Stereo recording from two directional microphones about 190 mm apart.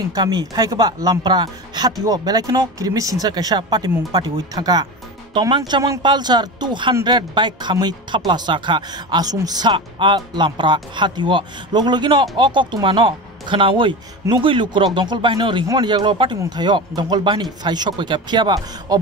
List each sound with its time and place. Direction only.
0.1 s speech: 20° right (ahead or behind)